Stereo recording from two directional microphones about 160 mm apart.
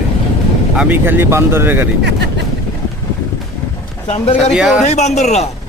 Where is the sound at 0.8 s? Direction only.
10° right (ahead or behind).